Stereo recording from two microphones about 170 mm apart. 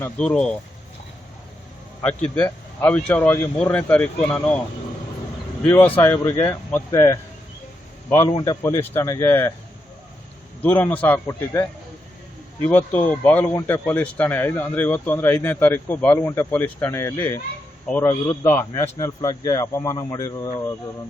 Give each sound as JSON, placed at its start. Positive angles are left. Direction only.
{"t": 0.0, "sound": "speech", "side_deg": 5}
{"t": 2.0, "sound": "speech", "side_deg": 10}
{"t": 5.6, "sound": "speech", "side_deg": 10}
{"t": 8.3, "sound": "speech", "side_deg": 25}
{"t": 10.6, "sound": "a man's voice", "side_deg": 10}